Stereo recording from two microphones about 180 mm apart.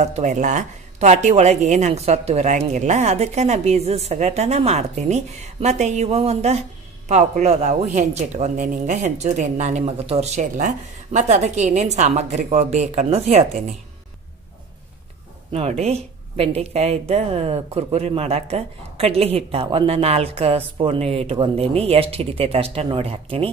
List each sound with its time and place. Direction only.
0.0 s speech: 40° right (ahead or behind)
15.5 s speech: 35° right (ahead or behind)